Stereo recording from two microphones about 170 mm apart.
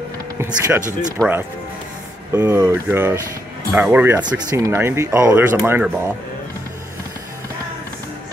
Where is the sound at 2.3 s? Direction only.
15° right (ahead or behind).